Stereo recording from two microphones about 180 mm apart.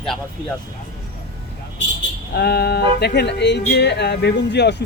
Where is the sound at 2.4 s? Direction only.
65° left (ahead or behind).